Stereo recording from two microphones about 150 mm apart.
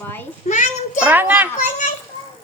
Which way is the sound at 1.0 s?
10° right (ahead or behind).